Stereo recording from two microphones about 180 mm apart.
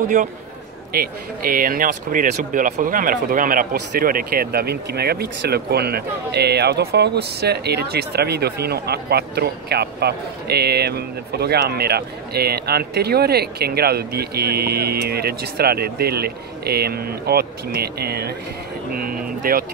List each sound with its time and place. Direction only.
0.2 s a man's voice: 40° right (ahead or behind)
0.9 s speech: 50° right (ahead or behind)